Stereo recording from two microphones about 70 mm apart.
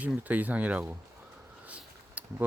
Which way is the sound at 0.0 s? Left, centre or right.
Right.